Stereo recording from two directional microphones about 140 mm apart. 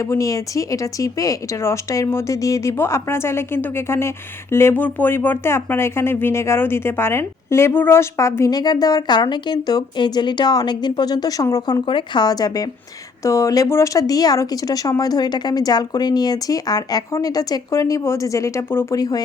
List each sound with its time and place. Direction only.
0.0 s speech: 25° left (ahead or behind)